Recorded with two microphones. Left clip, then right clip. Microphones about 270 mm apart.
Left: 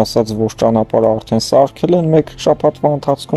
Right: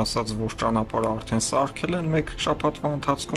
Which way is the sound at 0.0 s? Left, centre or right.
Left.